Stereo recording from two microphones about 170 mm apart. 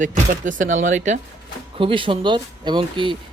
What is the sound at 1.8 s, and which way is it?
Speech, 30° right (ahead or behind).